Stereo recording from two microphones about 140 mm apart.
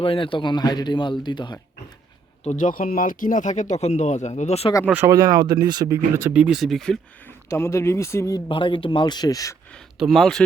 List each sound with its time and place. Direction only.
0.0 s speech: 40° left (ahead or behind)
2.4 s speech: 60° left (ahead or behind)
5.0 s speech: 25° right (ahead or behind)
6.2 s speech: 5° right (ahead or behind)
7.5 s speech: 20° left (ahead or behind)
8.4 s speech: 40° left (ahead or behind)
10.0 s speech: centre (ahead or behind)